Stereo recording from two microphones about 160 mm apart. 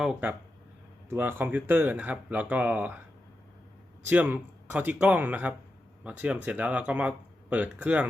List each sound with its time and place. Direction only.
0.0 s speech: 10° right (ahead or behind)
4.1 s speech: 10° right (ahead or behind)